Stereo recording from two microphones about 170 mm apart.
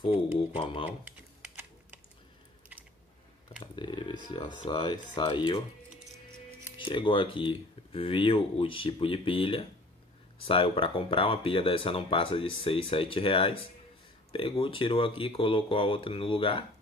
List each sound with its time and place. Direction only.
0.5 s speech: 30° left (ahead or behind)
0.8 s typing: 10° right (ahead or behind)
3.7 s speech: 30° left (ahead or behind)
6.8 s speech: 30° left (ahead or behind)